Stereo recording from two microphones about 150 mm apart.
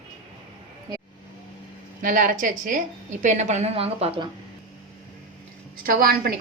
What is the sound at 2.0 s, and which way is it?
A woman's voice, 65° right (ahead or behind).